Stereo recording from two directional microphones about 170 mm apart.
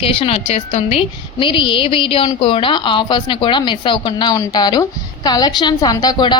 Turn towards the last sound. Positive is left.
turn(degrees=25)  # may be behind; listen again after turning